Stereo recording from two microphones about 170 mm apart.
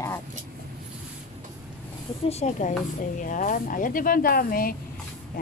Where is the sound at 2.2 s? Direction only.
40° left (ahead or behind).